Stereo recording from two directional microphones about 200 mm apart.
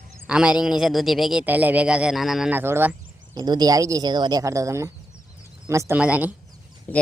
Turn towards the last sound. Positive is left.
turn(degrees=-5)  # may be behind; listen again after turning